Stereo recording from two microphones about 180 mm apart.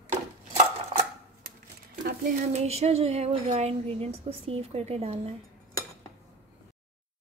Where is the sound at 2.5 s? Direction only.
35° right (ahead or behind).